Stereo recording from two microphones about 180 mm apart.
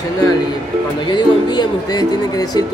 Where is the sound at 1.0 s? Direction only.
25° left (ahead or behind).